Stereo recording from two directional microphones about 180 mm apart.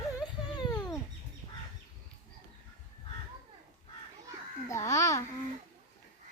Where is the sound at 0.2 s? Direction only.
25° left (ahead or behind).